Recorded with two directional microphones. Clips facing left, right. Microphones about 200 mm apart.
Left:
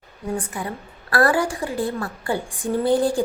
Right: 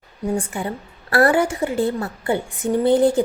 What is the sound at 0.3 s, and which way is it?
Speech, 25° right (ahead or behind).